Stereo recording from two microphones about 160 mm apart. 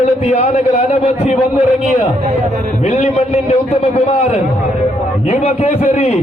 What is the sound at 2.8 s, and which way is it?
Speech, 45° left (ahead or behind).